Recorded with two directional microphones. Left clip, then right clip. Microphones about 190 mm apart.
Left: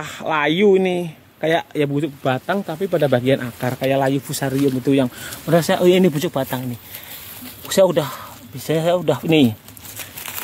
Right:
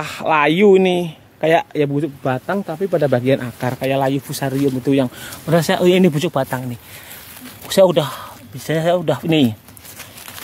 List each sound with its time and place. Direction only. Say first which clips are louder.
0.0 s speech: right 4 dB; 30° right (ahead or behind)
3.8 s speech: even; centre (ahead or behind)
7.6 s speech: right 2 dB; 5° right (ahead or behind)